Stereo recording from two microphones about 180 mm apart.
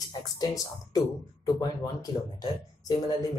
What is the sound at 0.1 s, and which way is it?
Speech, 20° left (ahead or behind).